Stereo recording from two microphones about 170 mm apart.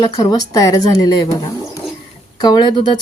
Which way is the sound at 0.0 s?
25° left (ahead or behind).